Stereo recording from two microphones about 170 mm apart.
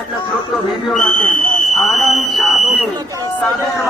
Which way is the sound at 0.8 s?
5° left (ahead or behind).